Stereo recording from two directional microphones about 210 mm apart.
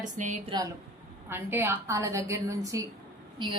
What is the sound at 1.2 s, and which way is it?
A woman's voice, 10° right (ahead or behind).